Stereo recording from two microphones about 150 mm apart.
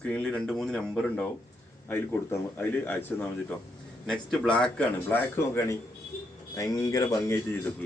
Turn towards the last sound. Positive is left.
turn(degrees=15)  # may be behind; listen again after turning